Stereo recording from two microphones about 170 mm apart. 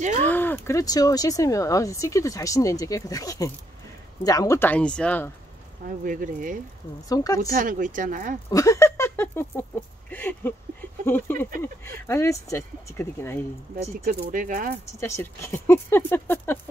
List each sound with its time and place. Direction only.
0.2 s speech: 10° left (ahead or behind)
5.9 s speech: 55° right (ahead or behind)
7.1 s speech: 20° left (ahead or behind)
7.5 s speech: 55° right (ahead or behind)
8.5 s a sound: 20° left (ahead or behind)
10.1 s speech: 10° left (ahead or behind)
14.0 s speech: 55° right (ahead or behind)
14.9 s speech: 15° left (ahead or behind)